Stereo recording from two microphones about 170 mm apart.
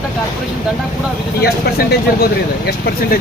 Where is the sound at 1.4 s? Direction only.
70° left (ahead or behind).